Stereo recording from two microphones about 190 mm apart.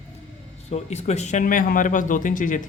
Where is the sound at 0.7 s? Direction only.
35° left (ahead or behind).